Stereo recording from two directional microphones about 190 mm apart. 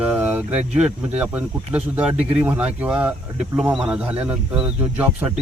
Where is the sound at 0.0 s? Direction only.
5° right (ahead or behind).